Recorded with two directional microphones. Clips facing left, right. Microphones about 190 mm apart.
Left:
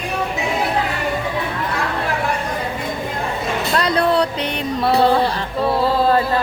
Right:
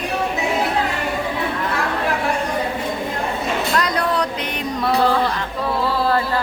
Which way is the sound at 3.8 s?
30° left (ahead or behind).